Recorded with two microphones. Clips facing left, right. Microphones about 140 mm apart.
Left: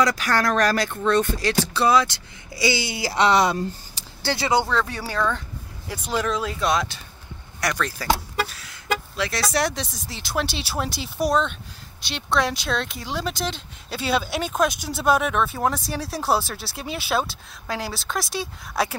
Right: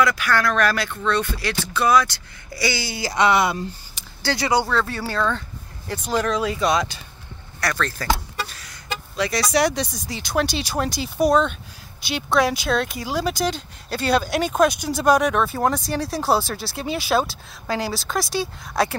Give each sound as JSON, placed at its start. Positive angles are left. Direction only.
{"t": 0.0, "sound": "speech", "side_deg": 40}
{"t": 4.3, "sound": "speech", "side_deg": 20}
{"t": 7.6, "sound": "speech", "side_deg": 10}